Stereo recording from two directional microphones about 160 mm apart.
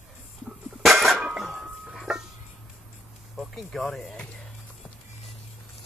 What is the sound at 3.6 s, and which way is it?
Speech, centre (ahead or behind).